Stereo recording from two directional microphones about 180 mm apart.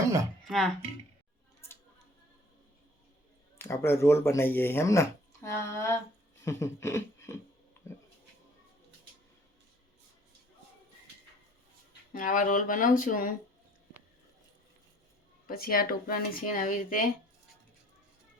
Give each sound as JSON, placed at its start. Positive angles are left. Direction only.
{"t": 0.4, "sound": "music", "side_deg": 0}
{"t": 3.6, "sound": "speech", "side_deg": 15}
{"t": 12.1, "sound": "speech", "side_deg": 50}
{"t": 15.4, "sound": "speech", "side_deg": 55}